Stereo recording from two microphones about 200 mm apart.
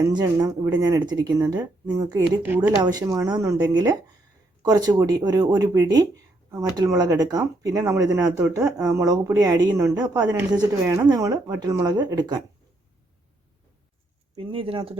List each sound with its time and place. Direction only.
0.1 s speech: 20° right (ahead or behind)
14.3 s speech: 25° right (ahead or behind)